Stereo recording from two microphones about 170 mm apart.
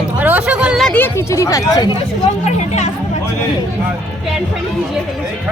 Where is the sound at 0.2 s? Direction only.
10° right (ahead or behind); by 2.0 s 25° left (ahead or behind).